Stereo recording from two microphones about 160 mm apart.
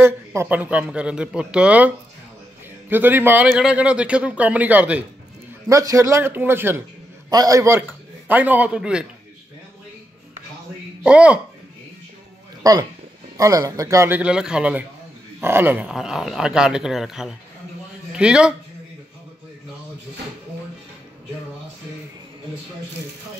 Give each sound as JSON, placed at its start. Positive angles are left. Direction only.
{"t": 0.0, "sound": "speech", "side_deg": -15}
{"t": 2.9, "sound": "speech", "side_deg": -10}
{"t": 5.7, "sound": "a man's voice", "side_deg": -20}
{"t": 11.1, "sound": "speech", "side_deg": -5}
{"t": 13.4, "sound": "speech", "side_deg": -20}